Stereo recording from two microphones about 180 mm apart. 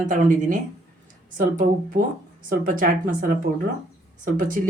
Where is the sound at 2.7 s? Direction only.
50° right (ahead or behind).